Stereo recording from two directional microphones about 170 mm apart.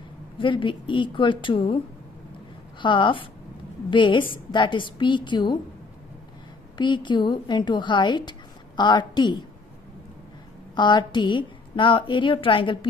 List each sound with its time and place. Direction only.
0.4 s a woman's voice: 30° left (ahead or behind)
2.8 s a woman's voice: 30° left (ahead or behind)
6.8 s a woman's voice: 25° left (ahead or behind)
10.7 s a woman's voice: 25° left (ahead or behind)